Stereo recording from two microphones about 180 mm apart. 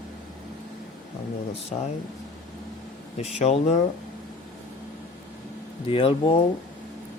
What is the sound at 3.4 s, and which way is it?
Speech, 40° left (ahead or behind).